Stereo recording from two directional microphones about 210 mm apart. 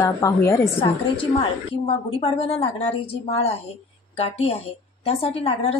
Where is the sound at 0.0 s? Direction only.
15° left (ahead or behind).